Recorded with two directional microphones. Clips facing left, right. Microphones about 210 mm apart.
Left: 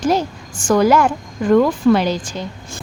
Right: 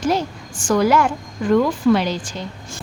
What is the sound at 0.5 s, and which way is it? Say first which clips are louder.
A woman's voice: left 3 dB; 45° left (ahead or behind).